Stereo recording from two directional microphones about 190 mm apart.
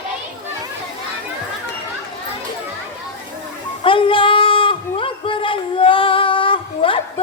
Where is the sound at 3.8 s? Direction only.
30° left (ahead or behind).